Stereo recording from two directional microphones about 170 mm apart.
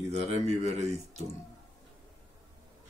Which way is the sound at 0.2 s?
40° right (ahead or behind).